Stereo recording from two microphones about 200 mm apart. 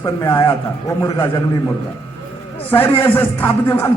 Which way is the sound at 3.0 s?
10° left (ahead or behind).